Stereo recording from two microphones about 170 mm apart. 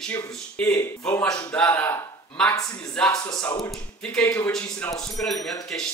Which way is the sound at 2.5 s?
20° left (ahead or behind).